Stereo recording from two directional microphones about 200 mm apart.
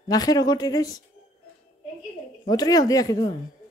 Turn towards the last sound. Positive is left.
turn(degrees=20)  # may be behind; listen again after turning